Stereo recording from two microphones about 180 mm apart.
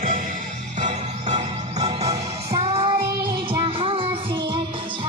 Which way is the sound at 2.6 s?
30° right (ahead or behind).